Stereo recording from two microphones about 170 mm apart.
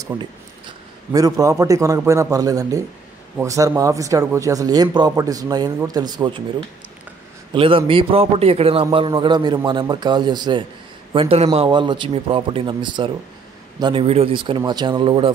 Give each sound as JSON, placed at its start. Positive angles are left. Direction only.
{"t": 0.0, "sound": "a sound", "side_deg": -25}
{"t": 1.4, "sound": "speech", "side_deg": -20}
{"t": 7.5, "sound": "a man's voice", "side_deg": -30}